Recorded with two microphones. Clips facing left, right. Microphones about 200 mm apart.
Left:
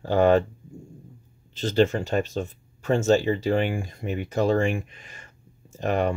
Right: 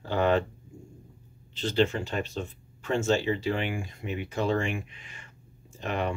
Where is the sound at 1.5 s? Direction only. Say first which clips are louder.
Left 4 dB; 45° left (ahead or behind).